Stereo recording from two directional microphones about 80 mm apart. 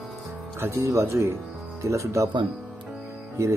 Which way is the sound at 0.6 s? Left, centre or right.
Right.